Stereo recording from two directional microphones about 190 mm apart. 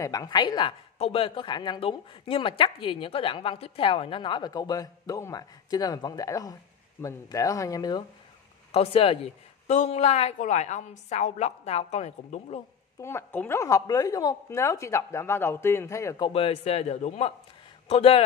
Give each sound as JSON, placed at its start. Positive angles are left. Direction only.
{"t": 0.0, "sound": "a woman's voice", "side_deg": 20}
{"t": 8.7, "sound": "speech", "side_deg": 30}
{"t": 13.0, "sound": "a woman's voice", "side_deg": 10}
{"t": 16.3, "sound": "speech", "side_deg": 30}